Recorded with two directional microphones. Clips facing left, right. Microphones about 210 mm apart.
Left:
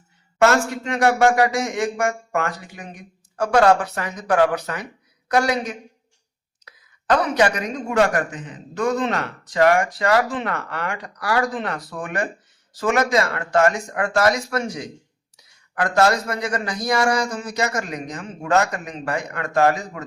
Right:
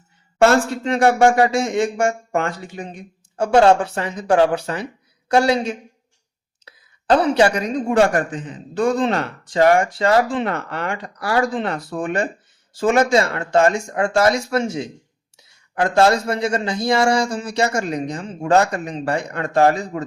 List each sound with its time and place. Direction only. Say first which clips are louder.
0.3 s a man's voice: right 3 dB; 30° right (ahead or behind)